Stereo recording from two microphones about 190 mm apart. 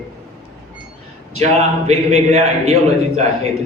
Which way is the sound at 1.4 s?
35° right (ahead or behind).